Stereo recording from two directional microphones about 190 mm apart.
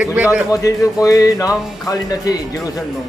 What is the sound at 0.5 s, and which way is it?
Speech, 15° left (ahead or behind).